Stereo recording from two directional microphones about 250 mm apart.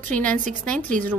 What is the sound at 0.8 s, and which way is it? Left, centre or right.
Speech, right.